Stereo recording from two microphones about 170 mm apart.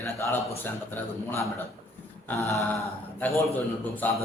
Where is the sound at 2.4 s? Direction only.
20° right (ahead or behind).